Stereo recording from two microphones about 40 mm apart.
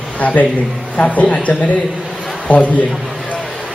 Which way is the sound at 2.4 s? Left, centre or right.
Left.